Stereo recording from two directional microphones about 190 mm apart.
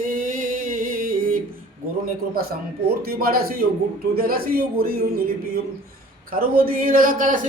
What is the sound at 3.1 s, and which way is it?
A man's voice, 50° right (ahead or behind).